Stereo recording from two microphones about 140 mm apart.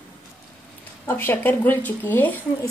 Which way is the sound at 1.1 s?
15° left (ahead or behind).